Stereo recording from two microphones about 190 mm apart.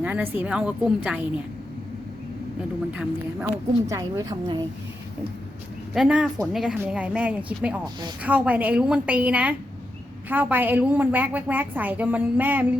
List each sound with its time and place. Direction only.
0.0 s a woman's voice: 10° right (ahead or behind)
3.0 s a woman's voice: 10° right (ahead or behind)
5.9 s a woman's voice: 5° right (ahead or behind)